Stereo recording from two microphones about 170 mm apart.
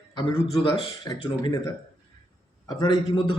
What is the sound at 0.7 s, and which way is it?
A man's voice, 25° left (ahead or behind).